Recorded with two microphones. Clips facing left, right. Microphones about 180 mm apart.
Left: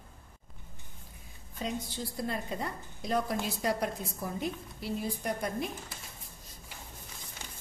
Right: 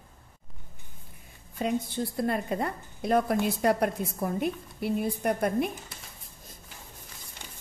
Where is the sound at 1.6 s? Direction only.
55° right (ahead or behind).